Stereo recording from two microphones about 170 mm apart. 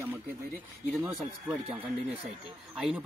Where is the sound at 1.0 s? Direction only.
10° right (ahead or behind).